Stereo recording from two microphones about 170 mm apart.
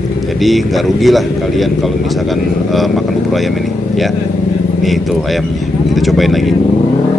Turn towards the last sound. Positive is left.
turn(degrees=0)  # may be behind; listen again after turning